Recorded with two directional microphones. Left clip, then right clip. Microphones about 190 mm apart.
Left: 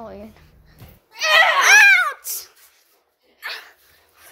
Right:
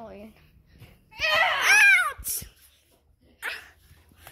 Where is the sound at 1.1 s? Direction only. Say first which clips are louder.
Left 8 dB; 60° left (ahead or behind).